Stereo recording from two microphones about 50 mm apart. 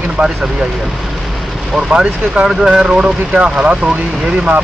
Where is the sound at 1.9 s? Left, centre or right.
Right.